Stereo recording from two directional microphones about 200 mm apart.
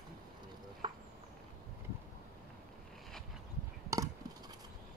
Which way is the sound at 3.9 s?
15° right (ahead or behind).